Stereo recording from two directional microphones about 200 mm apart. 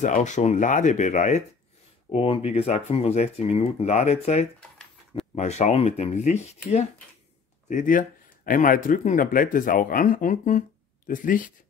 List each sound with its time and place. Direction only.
0.0 s speech: 35° left (ahead or behind)
2.0 s speech: 25° left (ahead or behind)
4.6 s a sound: 5° left (ahead or behind)
5.3 s speech: 35° left (ahead or behind)